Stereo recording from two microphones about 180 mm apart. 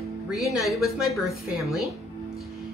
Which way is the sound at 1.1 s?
Centre (ahead or behind).